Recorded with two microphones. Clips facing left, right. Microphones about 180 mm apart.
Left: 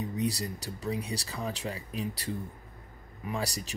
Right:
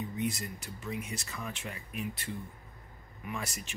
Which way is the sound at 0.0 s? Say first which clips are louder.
Left 3 dB; 35° left (ahead or behind).